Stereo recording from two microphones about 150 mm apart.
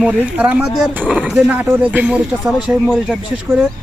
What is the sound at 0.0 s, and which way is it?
Speech, 10° right (ahead or behind).